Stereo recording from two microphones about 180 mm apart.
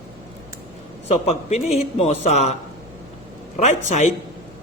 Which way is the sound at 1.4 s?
40° left (ahead or behind).